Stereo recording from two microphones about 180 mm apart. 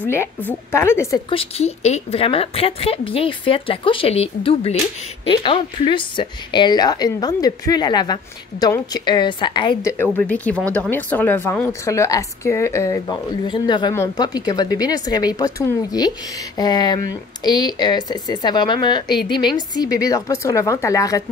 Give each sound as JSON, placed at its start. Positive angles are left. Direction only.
{"t": 0.1, "sound": "a woman's voice", "side_deg": 10}
{"t": 1.3, "sound": "a woman's voice", "side_deg": 35}